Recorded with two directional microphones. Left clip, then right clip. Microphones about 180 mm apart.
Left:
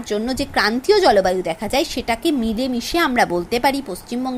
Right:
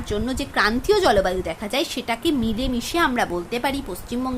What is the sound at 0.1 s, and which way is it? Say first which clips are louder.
A woman's voice: left 4 dB; 20° left (ahead or behind).